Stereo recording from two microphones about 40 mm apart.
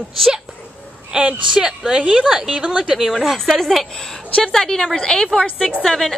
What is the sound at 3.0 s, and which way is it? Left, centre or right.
A woman's voice, centre.